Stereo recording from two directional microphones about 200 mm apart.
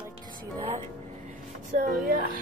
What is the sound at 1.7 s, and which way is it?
Speech, 40° right (ahead or behind).